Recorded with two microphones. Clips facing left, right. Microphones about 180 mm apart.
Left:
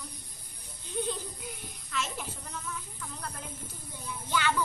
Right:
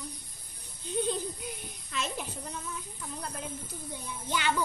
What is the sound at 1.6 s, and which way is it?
Child singing, 20° right (ahead or behind).